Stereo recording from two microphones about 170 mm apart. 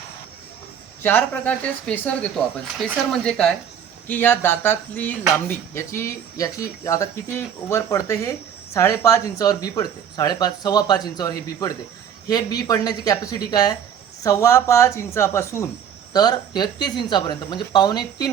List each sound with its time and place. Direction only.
1.0 s speech: 10° left (ahead or behind)